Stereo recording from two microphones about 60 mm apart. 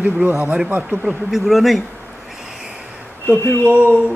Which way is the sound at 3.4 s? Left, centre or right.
Right.